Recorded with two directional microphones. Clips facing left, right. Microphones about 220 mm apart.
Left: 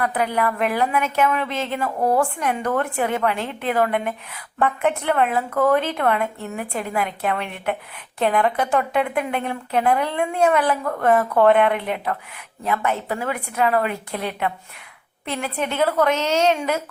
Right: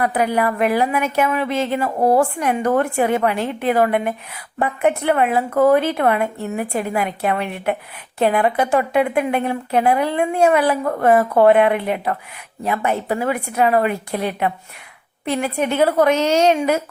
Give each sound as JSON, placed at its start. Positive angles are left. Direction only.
{"t": 0.0, "sound": "a woman's voice", "side_deg": -15}
{"t": 1.8, "sound": "a woman's voice", "side_deg": -30}
{"t": 2.4, "sound": "a woman's voice", "side_deg": -10}